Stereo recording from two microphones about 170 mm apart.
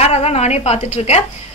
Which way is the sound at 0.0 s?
40° left (ahead or behind).